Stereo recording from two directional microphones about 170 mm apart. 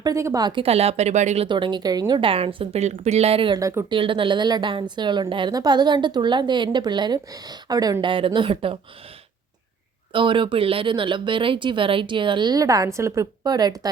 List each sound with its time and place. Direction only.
0.0 s a woman's voice: 20° right (ahead or behind); by 1.5 s 45° right (ahead or behind)
1.5 s a woman's voice: 30° right (ahead or behind)
3.6 s speech: 20° right (ahead or behind)
3.9 s a woman's voice: 30° right (ahead or behind)
10.1 s a woman's voice: 30° right (ahead or behind)